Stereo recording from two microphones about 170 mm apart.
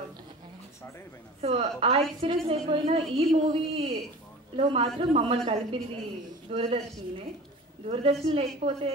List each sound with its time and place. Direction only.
1.4 s a woman's voice: 35° right (ahead or behind)
7.9 s a woman's voice: 35° right (ahead or behind)